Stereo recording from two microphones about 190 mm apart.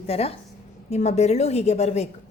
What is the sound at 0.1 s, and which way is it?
A woman's voice, 30° left (ahead or behind).